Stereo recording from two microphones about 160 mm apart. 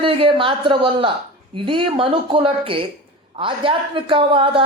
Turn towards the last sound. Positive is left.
turn(degrees=-35)  # may be behind; listen again after turning